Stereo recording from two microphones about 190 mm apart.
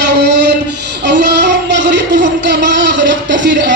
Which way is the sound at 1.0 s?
65° right (ahead or behind).